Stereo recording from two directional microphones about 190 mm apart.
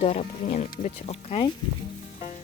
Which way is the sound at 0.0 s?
35° left (ahead or behind).